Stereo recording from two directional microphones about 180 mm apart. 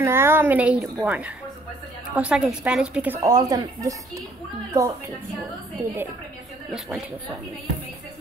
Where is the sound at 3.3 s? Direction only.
20° right (ahead or behind).